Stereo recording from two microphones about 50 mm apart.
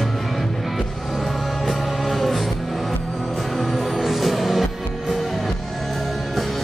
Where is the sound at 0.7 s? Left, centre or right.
Centre.